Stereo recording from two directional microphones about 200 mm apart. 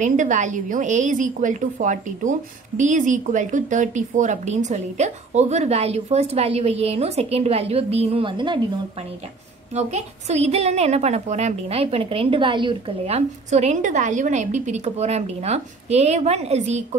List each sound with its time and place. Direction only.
0.0 s a woman's voice: 40° right (ahead or behind)
9.8 s a woman's voice: 35° right (ahead or behind)